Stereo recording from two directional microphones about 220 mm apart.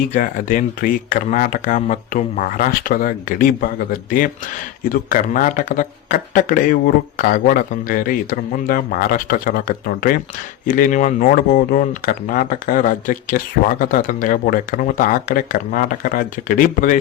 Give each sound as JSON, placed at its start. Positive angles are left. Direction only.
{"t": 0.0, "sound": "speech", "side_deg": 40}
{"t": 4.8, "sound": "speech", "side_deg": 40}